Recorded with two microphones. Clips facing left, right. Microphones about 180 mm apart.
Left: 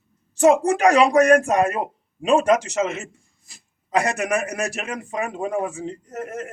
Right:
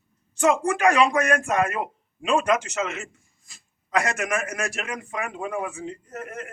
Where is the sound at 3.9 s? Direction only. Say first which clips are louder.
Left 3 dB; 35° left (ahead or behind).